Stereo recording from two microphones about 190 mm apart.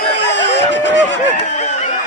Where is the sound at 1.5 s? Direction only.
35° left (ahead or behind).